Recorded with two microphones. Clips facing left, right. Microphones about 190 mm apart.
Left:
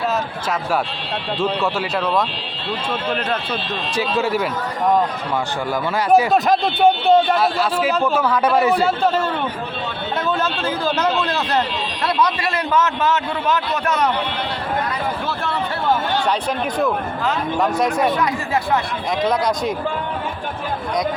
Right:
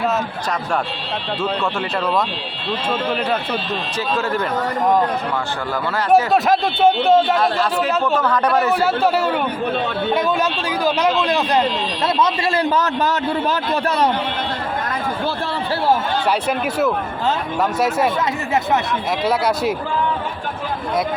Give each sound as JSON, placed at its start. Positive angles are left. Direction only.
{"t": 3.9, "sound": "speech", "side_deg": 10}
{"t": 6.3, "sound": "a man's voice", "side_deg": 0}
{"t": 8.7, "sound": "a man's voice", "side_deg": -5}
{"t": 12.0, "sound": "a man's voice", "side_deg": -25}
{"t": 16.2, "sound": "a man's voice", "side_deg": -5}
{"t": 19.2, "sound": "a man's voice", "side_deg": -5}